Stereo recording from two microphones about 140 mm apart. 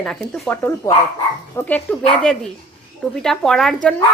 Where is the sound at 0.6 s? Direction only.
15° left (ahead or behind).